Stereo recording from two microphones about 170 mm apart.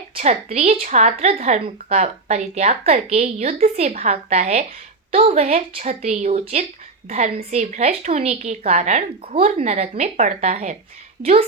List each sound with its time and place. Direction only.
0.1 s a woman's voice: 40° right (ahead or behind)
11.2 s a woman's voice: 35° right (ahead or behind)